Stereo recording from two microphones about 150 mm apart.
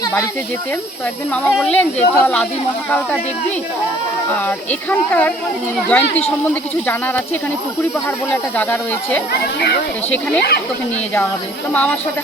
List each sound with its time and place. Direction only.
1.3 s speech: centre (ahead or behind)
4.3 s speech: 10° left (ahead or behind)
9.3 s speech: 90° left
11.7 s speech: 10° left (ahead or behind)